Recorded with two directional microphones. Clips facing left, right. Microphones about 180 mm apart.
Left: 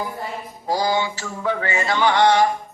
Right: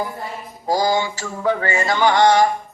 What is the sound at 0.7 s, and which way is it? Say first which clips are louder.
A man's voice: right 2 dB; 40° right (ahead or behind).